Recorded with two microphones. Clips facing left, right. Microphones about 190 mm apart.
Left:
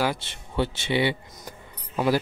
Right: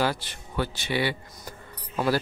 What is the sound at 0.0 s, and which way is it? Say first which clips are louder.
Speech: even; 20° left (ahead or behind).